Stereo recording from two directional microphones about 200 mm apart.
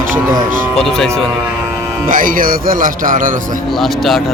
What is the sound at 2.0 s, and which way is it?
Speech, 45° right (ahead or behind).